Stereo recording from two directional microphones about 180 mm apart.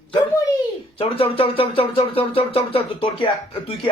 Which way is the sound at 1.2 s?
30° left (ahead or behind).